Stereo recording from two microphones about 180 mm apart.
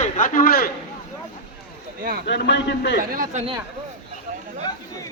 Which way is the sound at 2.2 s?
70° left (ahead or behind).